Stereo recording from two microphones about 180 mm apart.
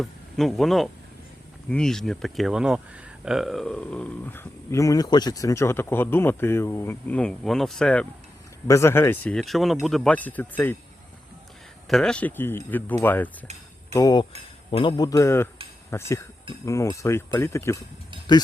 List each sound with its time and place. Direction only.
0.0 s speech: centre (ahead or behind)
8.6 s speech: 15° left (ahead or behind)
11.9 s speech: 5° left (ahead or behind)
13.9 s speech: 20° left (ahead or behind)